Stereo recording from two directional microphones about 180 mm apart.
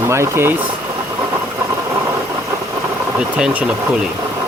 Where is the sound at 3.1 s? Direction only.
5° right (ahead or behind).